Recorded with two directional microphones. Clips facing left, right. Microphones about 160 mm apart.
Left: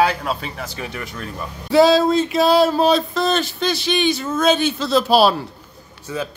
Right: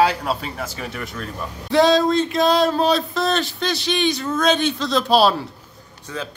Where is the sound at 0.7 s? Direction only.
Centre (ahead or behind).